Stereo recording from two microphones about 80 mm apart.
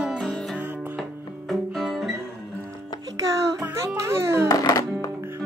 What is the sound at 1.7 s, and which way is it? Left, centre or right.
Music, centre.